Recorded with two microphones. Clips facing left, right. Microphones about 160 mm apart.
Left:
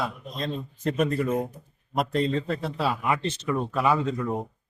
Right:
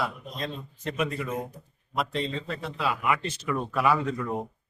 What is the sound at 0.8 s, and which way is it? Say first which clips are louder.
A man's voice: left 5 dB; 45° left (ahead or behind).